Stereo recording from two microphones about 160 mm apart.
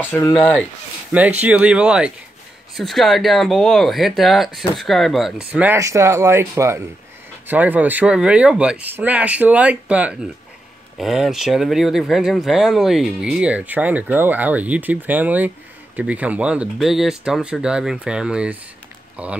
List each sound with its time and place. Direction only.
0.0 s speech: 15° left (ahead or behind)
1.1 s speech: 10° right (ahead or behind)
5.5 s speech: 10° right (ahead or behind)